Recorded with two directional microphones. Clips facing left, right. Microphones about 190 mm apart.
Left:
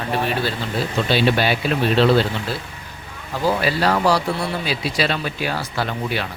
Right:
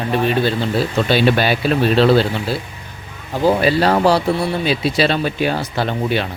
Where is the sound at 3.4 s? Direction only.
25° right (ahead or behind).